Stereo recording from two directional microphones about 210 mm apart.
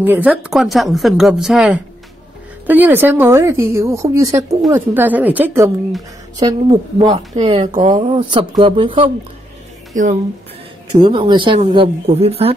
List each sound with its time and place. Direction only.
0.0 s a woman's voice: 10° right (ahead or behind)
6.4 s speech: 30° right (ahead or behind)
11.0 s speech: 20° right (ahead or behind)